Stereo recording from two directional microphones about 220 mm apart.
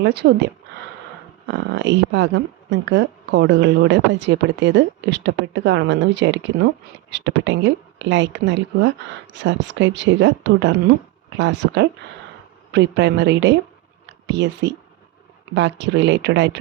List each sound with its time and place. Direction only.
0.0 s a woman's voice: 50° right (ahead or behind)